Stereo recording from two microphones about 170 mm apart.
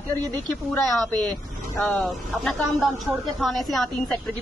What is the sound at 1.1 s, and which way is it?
Vehicle, 25° right (ahead or behind).